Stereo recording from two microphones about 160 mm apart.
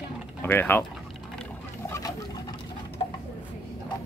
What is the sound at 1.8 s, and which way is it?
Patter, 20° left (ahead or behind).